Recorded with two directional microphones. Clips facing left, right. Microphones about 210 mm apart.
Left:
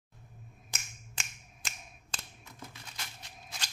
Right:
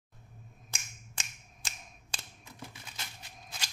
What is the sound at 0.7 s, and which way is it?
Finger snapping, 15° right (ahead or behind).